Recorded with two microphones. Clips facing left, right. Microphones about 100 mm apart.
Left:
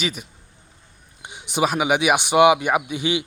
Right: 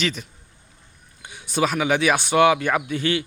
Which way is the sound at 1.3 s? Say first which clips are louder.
Left 1 dB; 15° left (ahead or behind).